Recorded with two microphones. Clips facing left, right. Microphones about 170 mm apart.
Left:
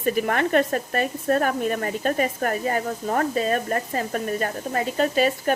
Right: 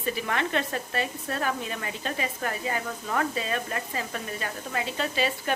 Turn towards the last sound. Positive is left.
turn(degrees=45)  # may be behind; listen again after turning